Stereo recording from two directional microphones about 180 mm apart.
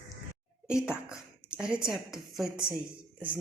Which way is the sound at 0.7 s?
5° right (ahead or behind).